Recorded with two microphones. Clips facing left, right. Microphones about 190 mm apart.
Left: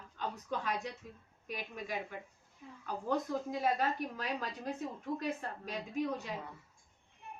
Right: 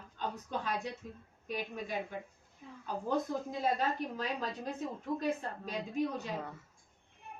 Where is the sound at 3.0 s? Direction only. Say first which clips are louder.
Even; 25° right (ahead or behind).